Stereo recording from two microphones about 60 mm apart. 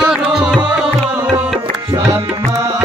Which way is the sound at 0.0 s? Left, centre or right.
Centre.